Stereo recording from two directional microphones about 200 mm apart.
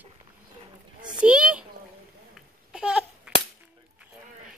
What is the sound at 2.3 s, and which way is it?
Babbling, 5° right (ahead or behind).